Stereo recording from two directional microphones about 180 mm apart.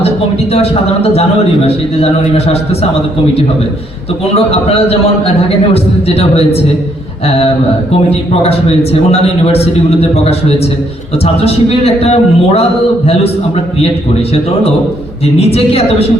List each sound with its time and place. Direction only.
0.5 s a man's voice: 35° left (ahead or behind)
5.7 s a man's voice: 35° left (ahead or behind)
8.4 s a man's voice: 35° left (ahead or behind)
11.4 s a man's voice: 35° left (ahead or behind)
15.4 s a man's voice: 35° left (ahead or behind)